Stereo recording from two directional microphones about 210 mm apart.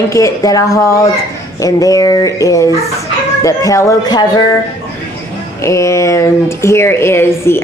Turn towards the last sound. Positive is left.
turn(degrees=10)  # may be behind; listen again after turning